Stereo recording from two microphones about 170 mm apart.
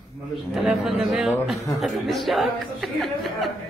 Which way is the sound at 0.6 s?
Centre (ahead or behind).